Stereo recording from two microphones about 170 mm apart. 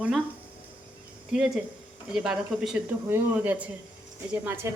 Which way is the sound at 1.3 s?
5° right (ahead or behind).